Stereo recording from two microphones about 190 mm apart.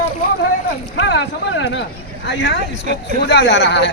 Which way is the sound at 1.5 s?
70° left (ahead or behind).